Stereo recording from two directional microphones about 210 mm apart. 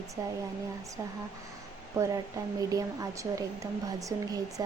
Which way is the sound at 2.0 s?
15° right (ahead or behind).